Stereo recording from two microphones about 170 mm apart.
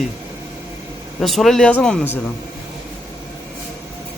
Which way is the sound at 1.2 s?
Centre (ahead or behind).